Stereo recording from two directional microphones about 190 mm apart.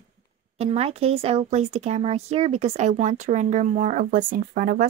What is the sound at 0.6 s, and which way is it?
Speech, 30° right (ahead or behind).